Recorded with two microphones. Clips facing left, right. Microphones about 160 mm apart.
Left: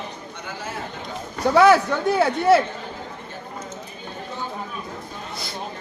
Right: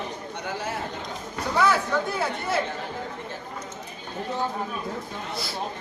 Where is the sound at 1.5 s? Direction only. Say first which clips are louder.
Left 7 dB; 75° left (ahead or behind).